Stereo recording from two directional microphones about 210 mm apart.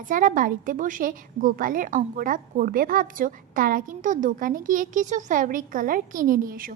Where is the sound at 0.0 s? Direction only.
40° right (ahead or behind).